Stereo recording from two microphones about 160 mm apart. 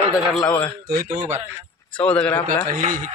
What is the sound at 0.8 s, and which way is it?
Speech, 70° right (ahead or behind).